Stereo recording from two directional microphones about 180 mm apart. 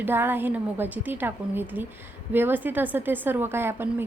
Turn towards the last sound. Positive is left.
turn(degrees=-15)  # may be behind; listen again after turning